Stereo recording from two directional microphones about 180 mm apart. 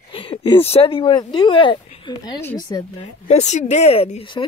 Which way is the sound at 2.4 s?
15° left (ahead or behind).